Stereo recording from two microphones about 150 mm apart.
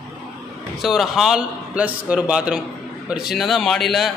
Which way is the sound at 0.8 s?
Centre (ahead or behind).